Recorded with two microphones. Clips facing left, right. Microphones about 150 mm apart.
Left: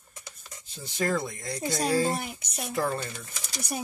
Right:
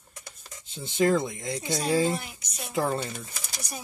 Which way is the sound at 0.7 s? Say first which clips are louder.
Right 5 dB; 25° right (ahead or behind).